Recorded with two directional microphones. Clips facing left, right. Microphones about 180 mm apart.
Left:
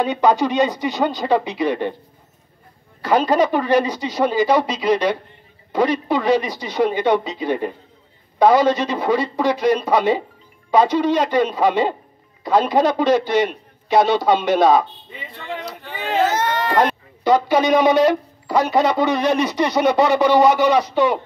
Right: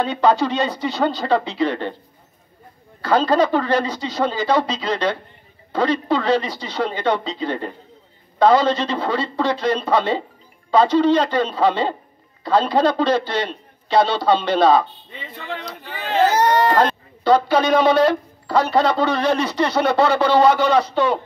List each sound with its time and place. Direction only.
0.0 s speech: 15° left (ahead or behind)
3.0 s speech: 15° left (ahead or behind)
15.3 s speech: centre (ahead or behind)
16.3 s speech: 35° right (ahead or behind)
16.7 s speech: 15° left (ahead or behind)